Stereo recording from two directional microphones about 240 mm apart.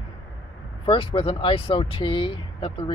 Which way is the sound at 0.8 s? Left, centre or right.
Left.